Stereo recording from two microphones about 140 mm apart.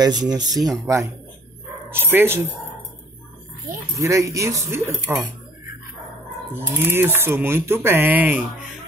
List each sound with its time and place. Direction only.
0.0 s speech: 30° right (ahead or behind)
1.9 s speech: 15° right (ahead or behind)
3.9 s speech: 20° right (ahead or behind)
6.5 s speech: 15° right (ahead or behind)